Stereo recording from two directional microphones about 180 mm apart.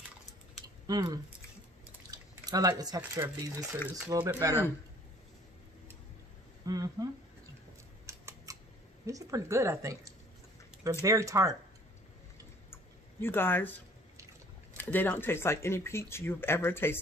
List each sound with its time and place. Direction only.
0.8 s speech: 20° right (ahead or behind)
6.6 s speech: 20° right (ahead or behind)
8.1 s scissors: 15° right (ahead or behind)
9.0 s speech: 20° right (ahead or behind)
12.7 s a sound: 10° left (ahead or behind)
14.8 s speech: 10° left (ahead or behind)